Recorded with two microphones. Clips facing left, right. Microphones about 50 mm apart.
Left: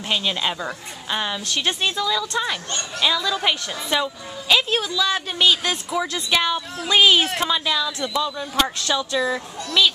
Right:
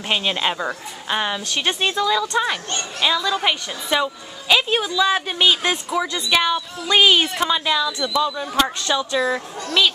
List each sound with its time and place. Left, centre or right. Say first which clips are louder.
0.1 s a woman's voice: right 2 dB; centre